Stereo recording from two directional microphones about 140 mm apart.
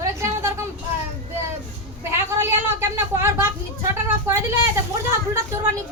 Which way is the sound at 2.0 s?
20° right (ahead or behind).